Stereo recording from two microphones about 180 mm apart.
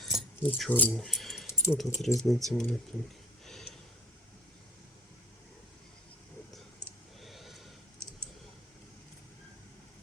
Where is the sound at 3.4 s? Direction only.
Centre (ahead or behind).